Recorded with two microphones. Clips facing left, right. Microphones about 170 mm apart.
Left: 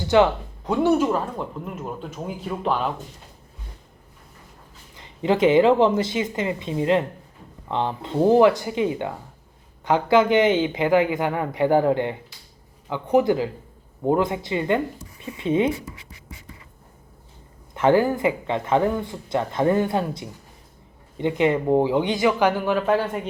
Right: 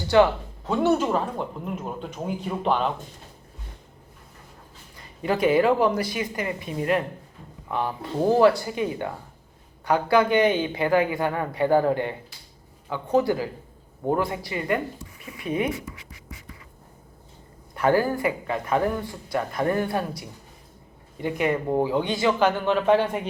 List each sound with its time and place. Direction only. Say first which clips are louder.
0.1 s a man's voice: left 1 dB; 15° left (ahead or behind)
1.1 s speech: even; centre (ahead or behind)
4.9 s speech: left 4 dB; 20° left (ahead or behind)
15.2 s scratch: left 5 dB; 25° left (ahead or behind)
17.7 s speech: left 3 dB; 20° left (ahead or behind); by 23.2 s 5° left (ahead or behind)